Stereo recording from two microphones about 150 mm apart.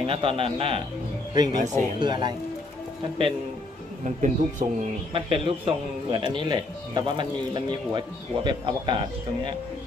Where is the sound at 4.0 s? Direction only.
55° right (ahead or behind).